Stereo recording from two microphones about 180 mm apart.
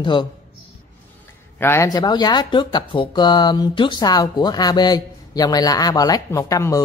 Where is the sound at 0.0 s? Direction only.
25° left (ahead or behind).